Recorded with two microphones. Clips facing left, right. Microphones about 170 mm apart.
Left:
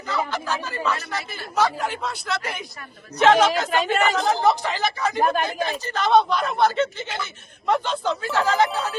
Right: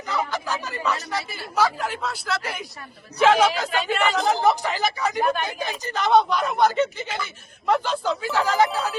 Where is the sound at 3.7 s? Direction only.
40° left (ahead or behind).